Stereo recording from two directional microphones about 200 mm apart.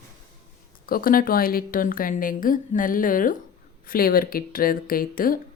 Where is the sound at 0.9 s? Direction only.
45° left (ahead or behind).